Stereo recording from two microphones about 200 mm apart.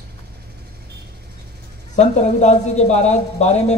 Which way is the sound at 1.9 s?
35° left (ahead or behind).